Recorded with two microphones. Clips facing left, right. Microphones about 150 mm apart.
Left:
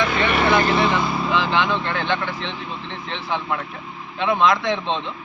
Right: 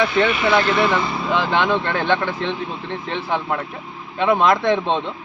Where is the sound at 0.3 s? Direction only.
55° left (ahead or behind).